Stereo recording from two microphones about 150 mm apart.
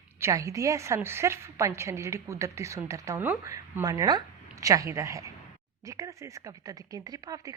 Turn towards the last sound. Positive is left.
turn(degrees=-25)  # may be behind; listen again after turning